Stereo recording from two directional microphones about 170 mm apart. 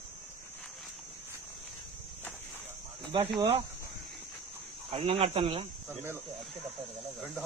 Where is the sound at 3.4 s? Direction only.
30° right (ahead or behind).